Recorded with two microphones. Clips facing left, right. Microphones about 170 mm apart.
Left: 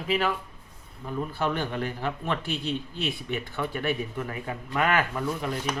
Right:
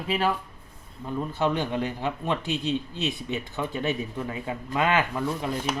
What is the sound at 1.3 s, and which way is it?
A man's voice, 20° right (ahead or behind).